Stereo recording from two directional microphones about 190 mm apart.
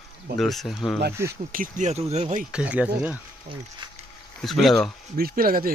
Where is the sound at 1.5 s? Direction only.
45° right (ahead or behind).